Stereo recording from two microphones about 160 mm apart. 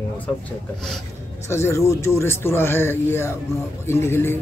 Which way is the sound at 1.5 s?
15° left (ahead or behind).